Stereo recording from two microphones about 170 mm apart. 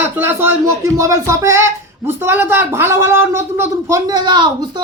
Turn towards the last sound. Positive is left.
turn(degrees=-25)  # may be behind; listen again after turning